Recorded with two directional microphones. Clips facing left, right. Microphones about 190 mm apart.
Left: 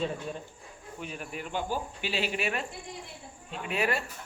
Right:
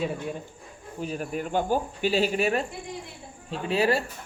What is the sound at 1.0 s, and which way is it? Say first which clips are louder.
Speech: right 8 dB; 40° right (ahead or behind).